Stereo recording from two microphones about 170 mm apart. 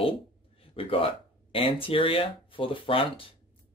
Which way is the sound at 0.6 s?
30° left (ahead or behind).